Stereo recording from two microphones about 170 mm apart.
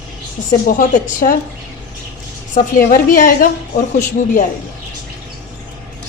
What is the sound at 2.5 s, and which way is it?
A woman's voice, 50° left (ahead or behind).